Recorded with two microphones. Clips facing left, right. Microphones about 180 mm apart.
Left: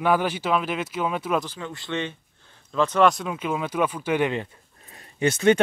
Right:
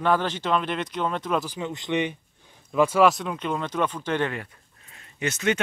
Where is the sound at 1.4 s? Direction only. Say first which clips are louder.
Right 3 dB; 15° right (ahead or behind); by 4.3 s 10° left (ahead or behind).